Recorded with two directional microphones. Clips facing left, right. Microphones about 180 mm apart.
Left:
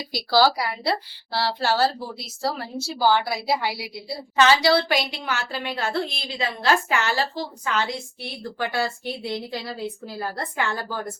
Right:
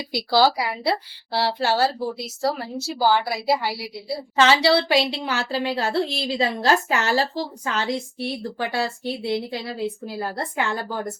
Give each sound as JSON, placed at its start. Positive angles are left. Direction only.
{"t": 0.1, "sound": "a woman's voice", "side_deg": -20}
{"t": 4.4, "sound": "a woman's voice", "side_deg": -25}